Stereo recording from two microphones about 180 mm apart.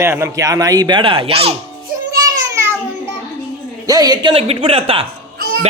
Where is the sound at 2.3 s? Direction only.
15° right (ahead or behind).